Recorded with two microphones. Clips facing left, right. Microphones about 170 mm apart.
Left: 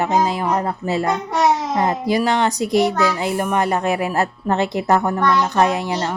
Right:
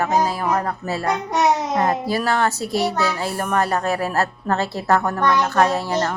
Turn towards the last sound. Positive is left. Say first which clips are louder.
# even
turn(degrees=15)  # may be behind; listen again after turning